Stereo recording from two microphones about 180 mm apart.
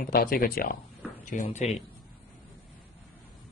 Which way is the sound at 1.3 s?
40° left (ahead or behind).